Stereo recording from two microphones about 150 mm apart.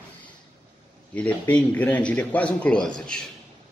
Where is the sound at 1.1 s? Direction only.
10° left (ahead or behind).